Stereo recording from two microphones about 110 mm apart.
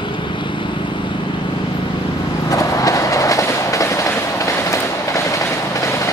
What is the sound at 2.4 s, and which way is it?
Train, 30° left (ahead or behind).